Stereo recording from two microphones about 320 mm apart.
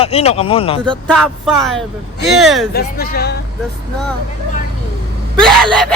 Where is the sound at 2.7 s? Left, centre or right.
Left.